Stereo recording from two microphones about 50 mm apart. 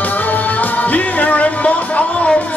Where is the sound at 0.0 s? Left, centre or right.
Left.